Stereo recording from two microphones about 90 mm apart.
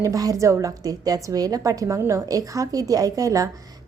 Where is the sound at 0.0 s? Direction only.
40° right (ahead or behind).